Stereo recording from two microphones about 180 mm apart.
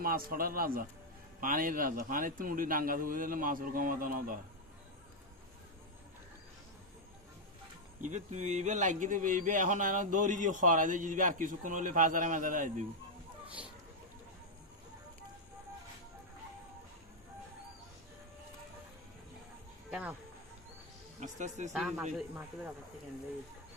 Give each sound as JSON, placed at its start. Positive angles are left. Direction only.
{"t": 0.0, "sound": "a man's voice", "side_deg": -55}
{"t": 8.0, "sound": "a man's voice", "side_deg": -40}
{"t": 19.9, "sound": "speech", "side_deg": -5}
{"t": 21.2, "sound": "a man's voice", "side_deg": -40}
{"t": 21.7, "sound": "a man's voice", "side_deg": 0}